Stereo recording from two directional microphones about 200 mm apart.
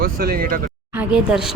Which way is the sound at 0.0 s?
50° right (ahead or behind).